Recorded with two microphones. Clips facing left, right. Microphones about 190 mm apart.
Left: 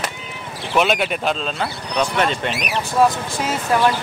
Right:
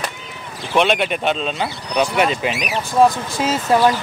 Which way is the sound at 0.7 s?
5° left (ahead or behind).